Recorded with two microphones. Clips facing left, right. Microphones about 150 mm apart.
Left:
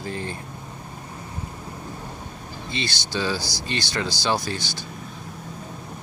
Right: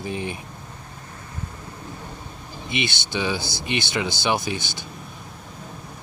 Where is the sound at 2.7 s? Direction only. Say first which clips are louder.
Right 2 dB; 20° right (ahead or behind).